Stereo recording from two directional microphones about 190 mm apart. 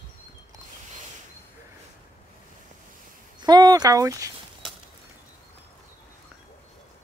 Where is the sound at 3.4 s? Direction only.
20° right (ahead or behind).